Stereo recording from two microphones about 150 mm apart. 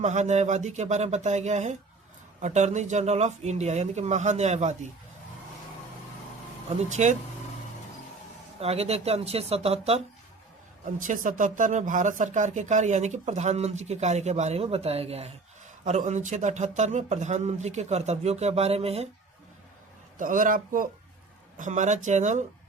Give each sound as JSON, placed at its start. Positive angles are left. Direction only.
{"t": 0.0, "sound": "speech", "side_deg": -50}
{"t": 6.7, "sound": "speech", "side_deg": -50}
{"t": 8.6, "sound": "speech", "side_deg": -45}
{"t": 11.0, "sound": "speech", "side_deg": -60}
{"t": 15.8, "sound": "speech", "side_deg": -55}
{"t": 20.1, "sound": "a man's voice", "side_deg": -65}
{"t": 21.6, "sound": "speech", "side_deg": -55}